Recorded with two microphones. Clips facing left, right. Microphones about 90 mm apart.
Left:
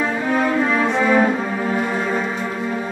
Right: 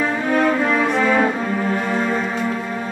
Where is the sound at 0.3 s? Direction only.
5° left (ahead or behind).